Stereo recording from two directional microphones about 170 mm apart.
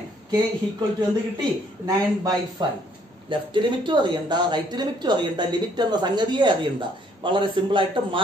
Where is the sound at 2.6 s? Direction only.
25° right (ahead or behind).